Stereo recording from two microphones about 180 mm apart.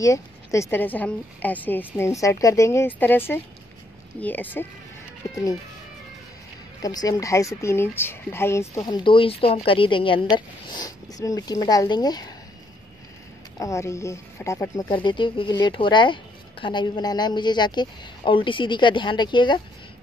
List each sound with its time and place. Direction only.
0.0 s a woman's voice: 15° left (ahead or behind)
6.8 s a woman's voice: 20° left (ahead or behind)
13.6 s speech: 15° left (ahead or behind)